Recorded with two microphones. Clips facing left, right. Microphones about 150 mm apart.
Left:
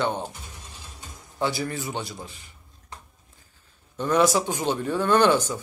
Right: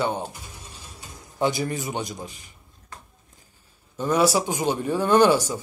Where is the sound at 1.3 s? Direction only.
20° right (ahead or behind).